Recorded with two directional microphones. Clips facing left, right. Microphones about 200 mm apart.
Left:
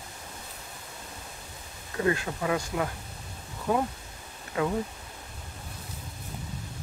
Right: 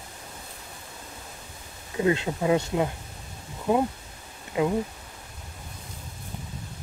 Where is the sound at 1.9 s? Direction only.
20° right (ahead or behind).